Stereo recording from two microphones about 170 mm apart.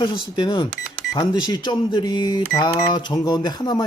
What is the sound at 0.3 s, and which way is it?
Speech, 30° left (ahead or behind).